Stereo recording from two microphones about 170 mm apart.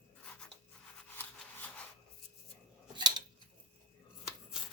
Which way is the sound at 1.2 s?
10° left (ahead or behind).